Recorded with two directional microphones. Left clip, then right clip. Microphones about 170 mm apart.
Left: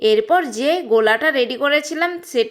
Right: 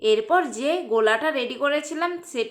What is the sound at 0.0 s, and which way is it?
A woman's voice, 30° left (ahead or behind).